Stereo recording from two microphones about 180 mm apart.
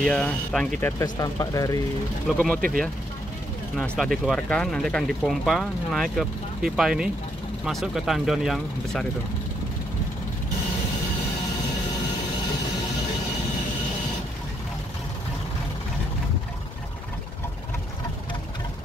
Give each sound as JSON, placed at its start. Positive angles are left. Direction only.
{"t": 0.0, "sound": "speech", "side_deg": 5}
{"t": 2.2, "sound": "speech", "side_deg": 5}
{"t": 3.7, "sound": "speech", "side_deg": 5}